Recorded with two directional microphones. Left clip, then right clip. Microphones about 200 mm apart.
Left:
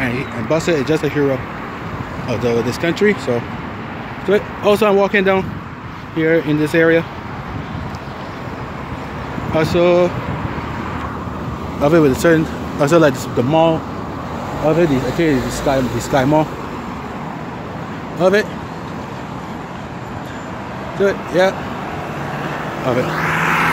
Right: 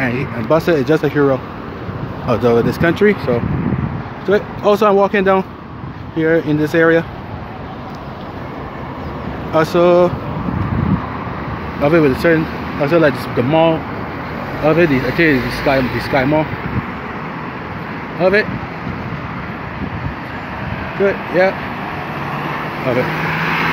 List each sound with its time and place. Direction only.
0.0 s speech: 5° right (ahead or behind)
4.3 s speech: 5° left (ahead or behind)
9.5 s speech: 5° right (ahead or behind)
11.8 s speech: 10° left (ahead or behind)
13.5 s speech: 5° left (ahead or behind)
18.2 s speech: 10° left (ahead or behind)
21.0 s speech: centre (ahead or behind)
23.2 s vehicle: 30° right (ahead or behind)